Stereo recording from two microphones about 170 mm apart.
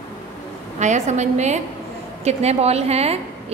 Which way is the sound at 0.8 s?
45° right (ahead or behind).